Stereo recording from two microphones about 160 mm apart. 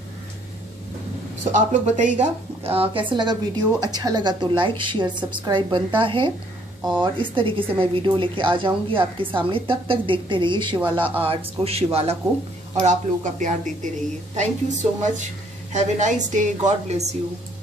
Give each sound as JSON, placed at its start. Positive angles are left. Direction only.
{"t": 1.5, "sound": "a woman's voice", "side_deg": -50}
{"t": 12.7, "sound": "speech", "side_deg": -50}